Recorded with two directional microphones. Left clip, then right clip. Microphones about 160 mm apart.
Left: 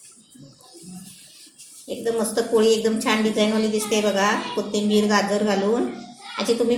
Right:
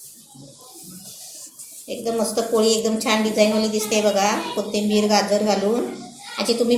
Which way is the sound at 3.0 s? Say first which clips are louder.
Right 4 dB; 35° left (ahead or behind).